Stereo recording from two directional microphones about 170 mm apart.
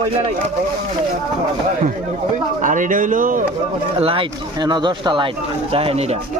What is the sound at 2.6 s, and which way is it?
Speech, 50° right (ahead or behind).